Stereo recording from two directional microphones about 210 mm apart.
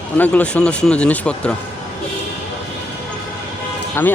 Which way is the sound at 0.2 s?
5° left (ahead or behind).